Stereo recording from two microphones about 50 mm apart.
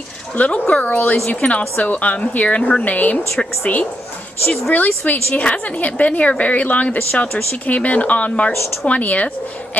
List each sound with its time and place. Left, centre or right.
0.4 s speech: left
0.8 s a woman's voice: left
3.4 s a woman's voice: centre
4.7 s a woman's voice: left